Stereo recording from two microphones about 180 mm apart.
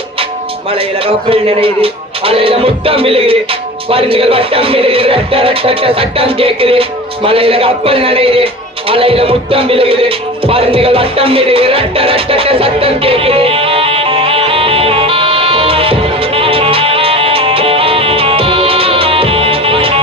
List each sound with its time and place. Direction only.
0.7 s music: 30° right (ahead or behind)